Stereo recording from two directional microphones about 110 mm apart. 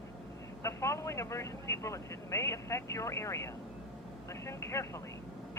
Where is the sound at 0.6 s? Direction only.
25° left (ahead or behind).